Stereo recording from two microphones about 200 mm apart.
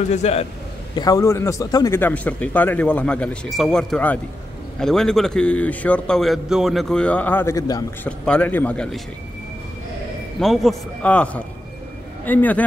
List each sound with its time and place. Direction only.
0.1 s a man's voice: 30° left (ahead or behind)
0.9 s a man's voice: 20° left (ahead or behind)
10.4 s a man's voice: centre (ahead or behind)